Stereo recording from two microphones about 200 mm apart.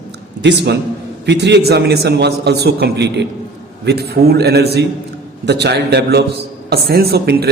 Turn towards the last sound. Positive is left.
turn(degrees=-50)  # may be behind; listen again after turning